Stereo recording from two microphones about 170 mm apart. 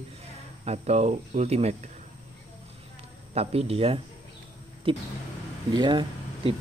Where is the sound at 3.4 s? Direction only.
35° right (ahead or behind).